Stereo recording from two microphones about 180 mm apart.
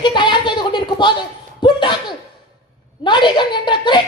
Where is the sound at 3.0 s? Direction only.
25° left (ahead or behind).